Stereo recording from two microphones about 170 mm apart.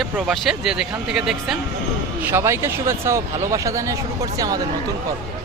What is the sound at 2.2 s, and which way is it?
Speech, 15° right (ahead or behind).